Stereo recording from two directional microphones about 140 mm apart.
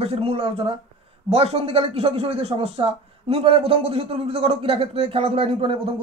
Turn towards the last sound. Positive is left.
turn(degrees=-40)  # may be behind; listen again after turning